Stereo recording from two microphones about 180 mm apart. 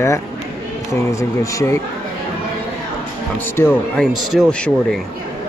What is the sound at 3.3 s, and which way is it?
Speech, 10° left (ahead or behind).